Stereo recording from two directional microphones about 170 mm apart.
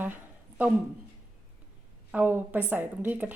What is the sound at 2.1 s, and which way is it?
A woman's voice, 10° right (ahead or behind).